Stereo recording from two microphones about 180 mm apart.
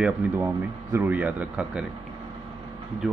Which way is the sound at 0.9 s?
10° right (ahead or behind).